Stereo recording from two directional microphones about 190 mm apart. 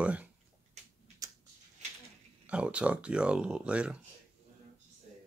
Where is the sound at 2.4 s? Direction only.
5° right (ahead or behind).